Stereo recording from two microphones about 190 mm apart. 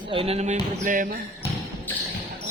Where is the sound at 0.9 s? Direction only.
45° right (ahead or behind).